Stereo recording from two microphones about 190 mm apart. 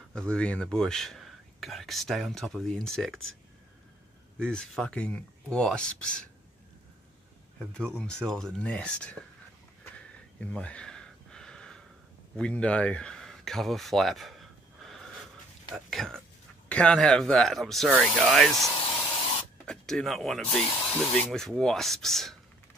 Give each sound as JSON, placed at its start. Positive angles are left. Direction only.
{"t": 0.1, "sound": "speech", "side_deg": 5}
{"t": 4.4, "sound": "speech", "side_deg": 5}
{"t": 7.5, "sound": "speech", "side_deg": 5}
{"t": 9.9, "sound": "a sound", "side_deg": 5}
{"t": 12.4, "sound": "speech", "side_deg": 5}
{"t": 19.0, "sound": "spray", "side_deg": 25}
{"t": 19.6, "sound": "speech", "side_deg": 5}